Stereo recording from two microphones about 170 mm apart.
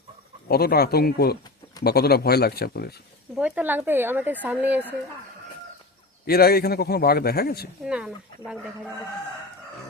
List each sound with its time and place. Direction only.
0.4 s speech: 65° left (ahead or behind)
3.3 s speech: 10° right (ahead or behind)
6.2 s a man's voice: 65° left (ahead or behind)
7.9 s speech: 5° right (ahead or behind)